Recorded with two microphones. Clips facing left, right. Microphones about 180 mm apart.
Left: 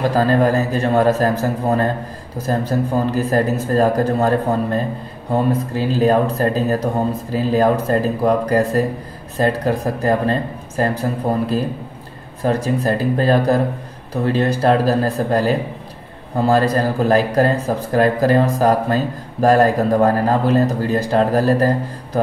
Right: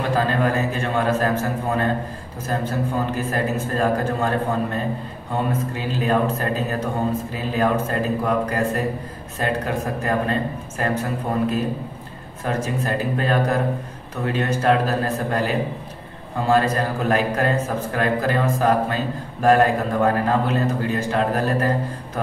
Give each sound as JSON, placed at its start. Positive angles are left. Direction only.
{"t": 0.1, "sound": "a man's voice", "side_deg": 40}